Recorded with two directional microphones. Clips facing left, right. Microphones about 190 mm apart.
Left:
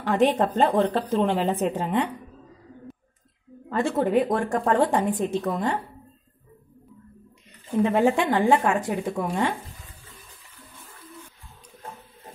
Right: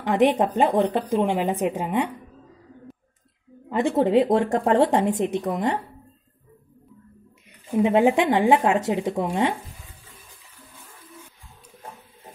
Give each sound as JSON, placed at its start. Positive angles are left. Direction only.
{"t": 0.0, "sound": "a woman's voice", "side_deg": -15}
{"t": 3.6, "sound": "a woman's voice", "side_deg": -15}
{"t": 7.7, "sound": "a woman's voice", "side_deg": -15}